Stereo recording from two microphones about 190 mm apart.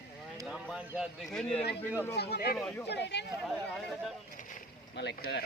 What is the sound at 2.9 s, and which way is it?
Speech, 60° left (ahead or behind).